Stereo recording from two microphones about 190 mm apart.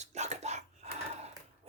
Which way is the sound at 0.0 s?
35° right (ahead or behind).